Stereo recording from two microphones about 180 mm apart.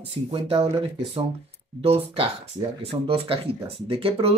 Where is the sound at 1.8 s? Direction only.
35° right (ahead or behind).